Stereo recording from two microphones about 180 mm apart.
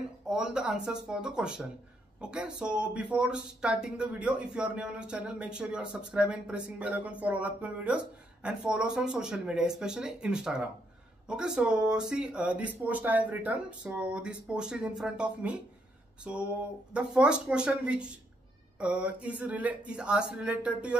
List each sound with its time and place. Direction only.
0.3 s speech: 5° right (ahead or behind)